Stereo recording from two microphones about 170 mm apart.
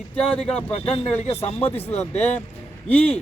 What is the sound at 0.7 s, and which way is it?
Speech, 40° left (ahead or behind).